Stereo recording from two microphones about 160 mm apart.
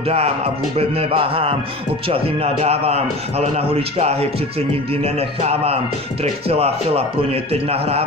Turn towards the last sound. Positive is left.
turn(degrees=-40)  # may be behind; listen again after turning